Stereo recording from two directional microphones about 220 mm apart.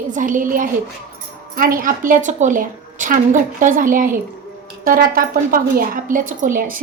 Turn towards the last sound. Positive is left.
turn(degrees=-35)  # may be behind; listen again after turning